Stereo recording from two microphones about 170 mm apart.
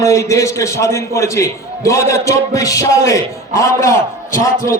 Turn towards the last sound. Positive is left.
turn(degrees=15)  # may be behind; listen again after turning